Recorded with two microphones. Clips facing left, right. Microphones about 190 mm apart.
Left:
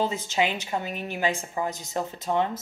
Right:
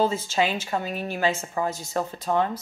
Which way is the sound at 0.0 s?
15° left (ahead or behind).